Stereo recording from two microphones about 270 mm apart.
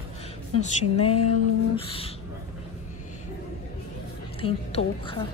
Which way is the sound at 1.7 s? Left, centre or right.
Left.